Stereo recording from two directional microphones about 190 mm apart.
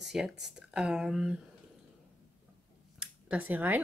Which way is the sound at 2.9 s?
5° right (ahead or behind).